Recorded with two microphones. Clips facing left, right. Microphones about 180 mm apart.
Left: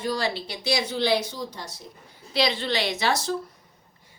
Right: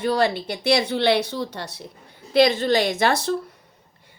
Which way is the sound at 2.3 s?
50° right (ahead or behind).